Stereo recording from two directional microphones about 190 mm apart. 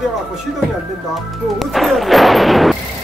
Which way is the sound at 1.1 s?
Centre (ahead or behind).